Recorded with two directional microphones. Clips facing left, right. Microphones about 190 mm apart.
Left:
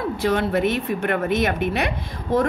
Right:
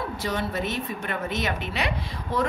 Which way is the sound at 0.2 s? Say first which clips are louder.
Left 9 dB; 60° left (ahead or behind).